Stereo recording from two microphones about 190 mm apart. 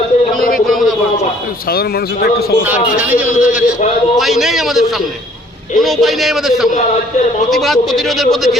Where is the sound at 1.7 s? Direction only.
55° left (ahead or behind).